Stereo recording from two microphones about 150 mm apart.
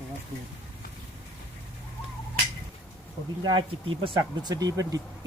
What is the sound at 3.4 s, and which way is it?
Speech, 30° right (ahead or behind).